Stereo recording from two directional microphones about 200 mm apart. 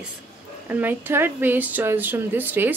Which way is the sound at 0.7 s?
10° right (ahead or behind).